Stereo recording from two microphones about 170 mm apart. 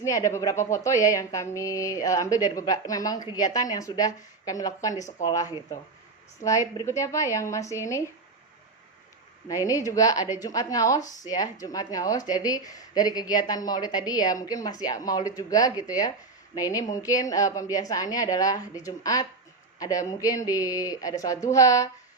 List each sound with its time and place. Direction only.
0.0 s a woman's voice: 20° left (ahead or behind)
9.5 s a woman's voice: 20° left (ahead or behind)